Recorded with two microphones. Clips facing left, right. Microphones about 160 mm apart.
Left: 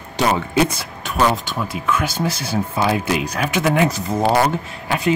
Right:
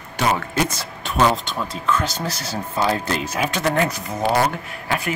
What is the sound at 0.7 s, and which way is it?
Speech, centre (ahead or behind).